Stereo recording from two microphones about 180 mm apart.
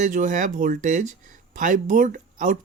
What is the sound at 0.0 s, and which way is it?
Speech, 45° right (ahead or behind).